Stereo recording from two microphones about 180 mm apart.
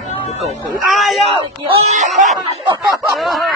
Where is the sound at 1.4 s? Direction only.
35° right (ahead or behind).